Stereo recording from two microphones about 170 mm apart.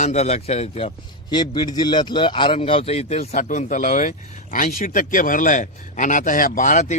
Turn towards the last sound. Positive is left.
turn(degrees=45)  # may be behind; listen again after turning